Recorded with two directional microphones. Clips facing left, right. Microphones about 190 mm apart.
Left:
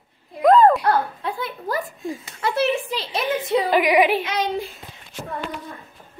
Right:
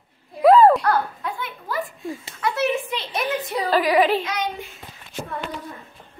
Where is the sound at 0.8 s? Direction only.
30° left (ahead or behind); by 4.2 s 15° left (ahead or behind).